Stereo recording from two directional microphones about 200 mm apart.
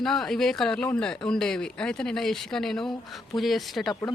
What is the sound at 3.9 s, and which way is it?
Speech, 20° left (ahead or behind).